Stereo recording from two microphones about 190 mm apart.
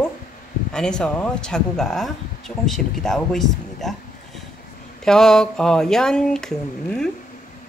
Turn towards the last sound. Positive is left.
turn(degrees=5)  # may be behind; listen again after turning